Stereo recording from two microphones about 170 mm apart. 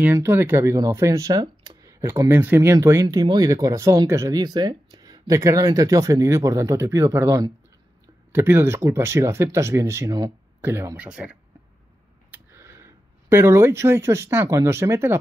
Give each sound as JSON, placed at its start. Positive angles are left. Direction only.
{"t": 0.0, "sound": "speech", "side_deg": -10}